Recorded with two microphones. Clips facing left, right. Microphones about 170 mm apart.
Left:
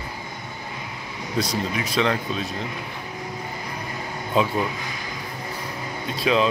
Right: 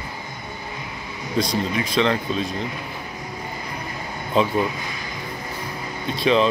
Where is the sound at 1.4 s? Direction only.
5° left (ahead or behind).